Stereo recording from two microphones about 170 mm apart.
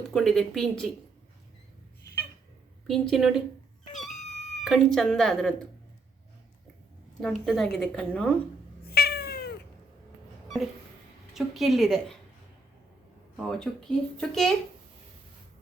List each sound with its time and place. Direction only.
0.1 s speech: centre (ahead or behind)
2.8 s speech: centre (ahead or behind)
4.0 s cat: 45° left (ahead or behind)
4.6 s speech: centre (ahead or behind)
7.2 s speech: centre (ahead or behind)
8.8 s cat: 70° left (ahead or behind)
11.3 s speech: centre (ahead or behind)
13.3 s speech: centre (ahead or behind)